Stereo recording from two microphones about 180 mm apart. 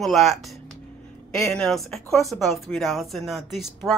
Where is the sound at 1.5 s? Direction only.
Centre (ahead or behind).